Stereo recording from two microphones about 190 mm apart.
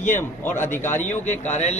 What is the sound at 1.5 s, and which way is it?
Speech, 35° left (ahead or behind).